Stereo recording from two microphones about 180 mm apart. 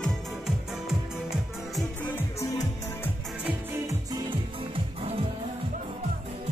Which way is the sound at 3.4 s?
15° right (ahead or behind).